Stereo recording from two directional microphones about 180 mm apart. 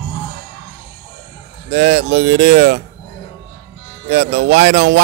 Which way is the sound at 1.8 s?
75° right (ahead or behind).